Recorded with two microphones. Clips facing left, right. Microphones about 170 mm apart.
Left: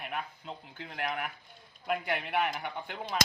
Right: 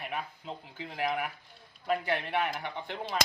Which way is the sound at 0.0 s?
Centre (ahead or behind).